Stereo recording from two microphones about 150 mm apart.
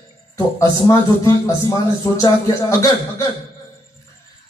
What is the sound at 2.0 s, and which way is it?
A man's voice, 25° left (ahead or behind).